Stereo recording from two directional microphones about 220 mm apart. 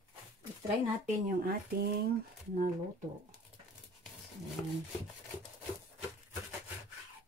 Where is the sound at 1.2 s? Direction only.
40° right (ahead or behind).